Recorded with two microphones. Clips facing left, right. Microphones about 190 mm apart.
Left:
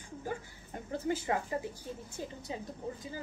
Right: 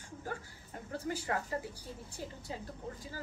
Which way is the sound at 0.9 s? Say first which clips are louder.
Left 4 dB; 20° left (ahead or behind).